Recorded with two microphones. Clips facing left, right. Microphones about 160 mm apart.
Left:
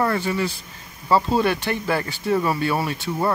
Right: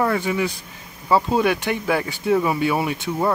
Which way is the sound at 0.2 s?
15° right (ahead or behind).